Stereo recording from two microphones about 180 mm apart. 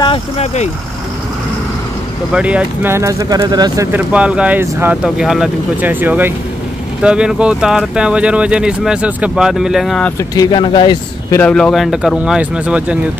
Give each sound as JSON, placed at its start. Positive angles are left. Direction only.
{"t": 0.0, "sound": "speech", "side_deg": 35}
{"t": 2.3, "sound": "speech", "side_deg": -5}
{"t": 4.1, "sound": "speech", "side_deg": -5}
{"t": 10.1, "sound": "speech", "side_deg": 20}
{"t": 11.4, "sound": "speech", "side_deg": 5}